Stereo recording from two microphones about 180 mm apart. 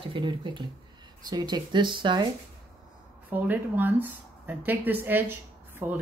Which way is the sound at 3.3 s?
10° right (ahead or behind).